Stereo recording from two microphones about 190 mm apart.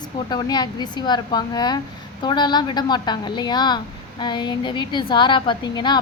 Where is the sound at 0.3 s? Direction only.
20° left (ahead or behind).